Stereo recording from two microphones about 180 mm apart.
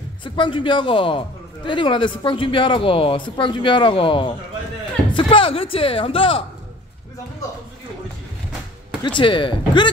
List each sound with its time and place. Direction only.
0.2 s a man's voice: 25° left (ahead or behind)
9.0 s a man's voice: 25° left (ahead or behind)